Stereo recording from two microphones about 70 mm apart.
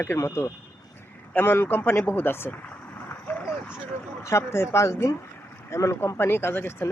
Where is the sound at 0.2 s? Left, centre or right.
Left.